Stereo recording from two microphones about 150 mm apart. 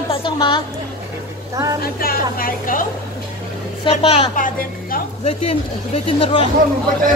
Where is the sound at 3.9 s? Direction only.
40° left (ahead or behind).